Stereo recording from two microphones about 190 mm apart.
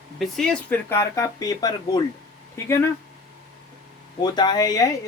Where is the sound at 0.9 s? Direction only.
15° left (ahead or behind).